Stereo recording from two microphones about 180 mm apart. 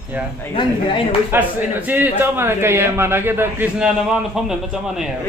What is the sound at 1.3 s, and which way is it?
A man's voice, 10° right (ahead or behind).